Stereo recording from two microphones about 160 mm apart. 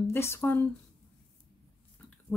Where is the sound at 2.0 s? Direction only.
5° left (ahead or behind).